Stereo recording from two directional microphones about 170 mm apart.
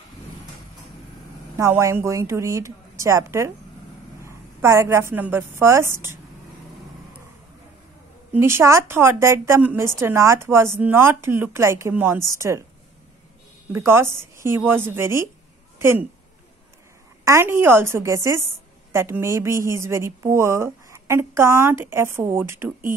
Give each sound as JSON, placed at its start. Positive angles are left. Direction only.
{"t": 1.6, "sound": "a woman's voice", "side_deg": -15}
{"t": 8.3, "sound": "a woman's voice", "side_deg": -15}
{"t": 13.7, "sound": "a woman's voice", "side_deg": -15}
{"t": 17.2, "sound": "a woman's voice", "side_deg": -15}